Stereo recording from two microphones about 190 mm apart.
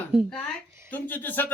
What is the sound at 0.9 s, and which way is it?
Speech, 10° left (ahead or behind).